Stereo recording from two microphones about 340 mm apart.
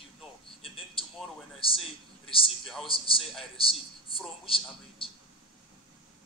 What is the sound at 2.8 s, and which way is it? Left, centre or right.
A man's voice, centre.